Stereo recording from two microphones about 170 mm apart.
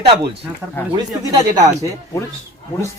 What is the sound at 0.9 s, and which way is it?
Speech, 20° right (ahead or behind).